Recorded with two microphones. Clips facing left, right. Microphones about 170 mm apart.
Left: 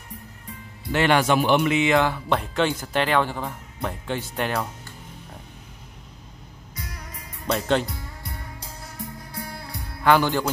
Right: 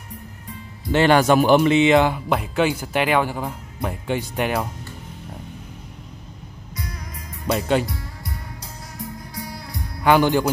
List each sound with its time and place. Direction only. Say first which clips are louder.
0.9 s speech: right 4 dB; 40° right (ahead or behind); by 4.6 s 15° right (ahead or behind)
7.4 s speech: right 2 dB; 10° right (ahead or behind)
7.8 s music: right 4 dB; 30° left (ahead or behind)
10.0 s speech: right 3 dB; 15° right (ahead or behind)